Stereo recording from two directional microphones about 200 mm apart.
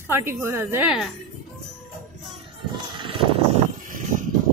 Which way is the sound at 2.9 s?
25° right (ahead or behind).